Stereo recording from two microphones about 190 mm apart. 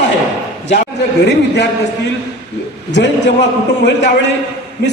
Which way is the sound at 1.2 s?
60° left (ahead or behind).